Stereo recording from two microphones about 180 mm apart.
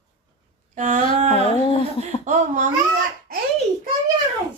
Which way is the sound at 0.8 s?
45° right (ahead or behind).